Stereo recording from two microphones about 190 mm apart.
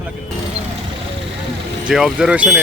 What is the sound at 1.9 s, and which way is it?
Speech, centre (ahead or behind).